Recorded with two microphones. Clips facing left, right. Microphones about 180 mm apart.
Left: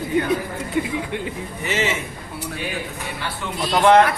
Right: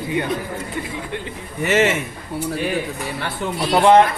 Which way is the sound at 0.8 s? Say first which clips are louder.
Left 9 dB; 15° left (ahead or behind).